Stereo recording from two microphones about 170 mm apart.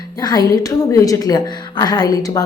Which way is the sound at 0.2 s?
20° left (ahead or behind).